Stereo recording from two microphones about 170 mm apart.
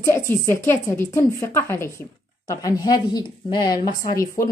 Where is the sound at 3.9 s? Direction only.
55° left (ahead or behind).